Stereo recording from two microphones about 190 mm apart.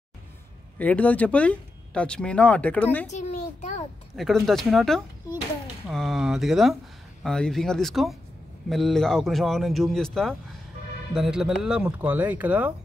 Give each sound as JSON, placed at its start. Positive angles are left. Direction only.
{"t": 0.7, "sound": "speech", "side_deg": 5}
{"t": 3.1, "sound": "a sound", "side_deg": 35}
{"t": 4.2, "sound": "speech", "side_deg": 0}